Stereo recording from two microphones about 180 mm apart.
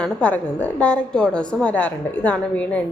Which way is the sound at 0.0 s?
10° left (ahead or behind).